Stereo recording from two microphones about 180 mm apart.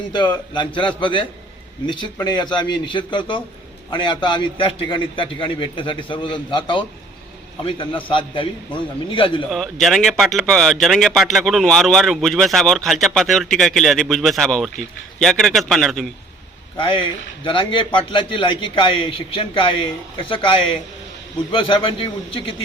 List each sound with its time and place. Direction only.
0.5 s a man's voice: 25° left (ahead or behind)
9.5 s speech: centre (ahead or behind)
16.7 s a man's voice: 30° left (ahead or behind)